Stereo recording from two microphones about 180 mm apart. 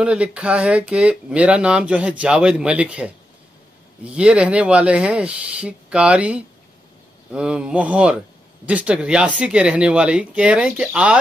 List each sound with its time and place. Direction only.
0.0 s speech: 5° right (ahead or behind)